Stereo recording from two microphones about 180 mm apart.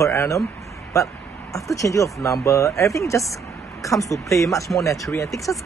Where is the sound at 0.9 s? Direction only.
15° left (ahead or behind).